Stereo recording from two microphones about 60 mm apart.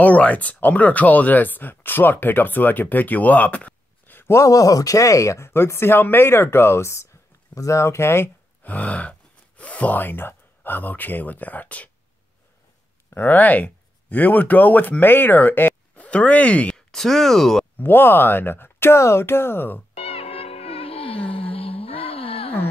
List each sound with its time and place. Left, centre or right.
0.0 s speech: left
4.2 s speech: left
8.6 s speech: left
13.1 s speech: left
16.1 s speech: left
16.7 s speech: centre
17.7 s speech: left
18.9 s speech: left